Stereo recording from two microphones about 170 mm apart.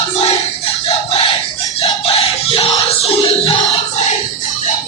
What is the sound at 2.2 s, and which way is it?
Music, 35° left (ahead or behind).